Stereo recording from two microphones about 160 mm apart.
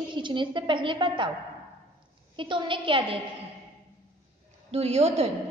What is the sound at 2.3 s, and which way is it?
Speech, 30° right (ahead or behind).